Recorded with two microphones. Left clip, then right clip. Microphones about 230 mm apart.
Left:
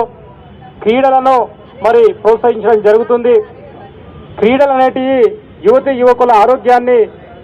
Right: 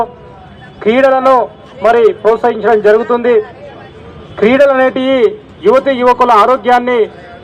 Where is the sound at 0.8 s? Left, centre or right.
Right.